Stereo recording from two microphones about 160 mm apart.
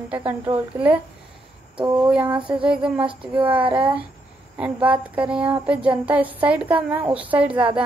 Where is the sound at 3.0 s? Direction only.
35° right (ahead or behind).